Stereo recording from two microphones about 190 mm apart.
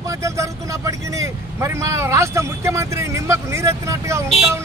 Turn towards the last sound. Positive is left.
turn(degrees=-15)  # may be behind; listen again after turning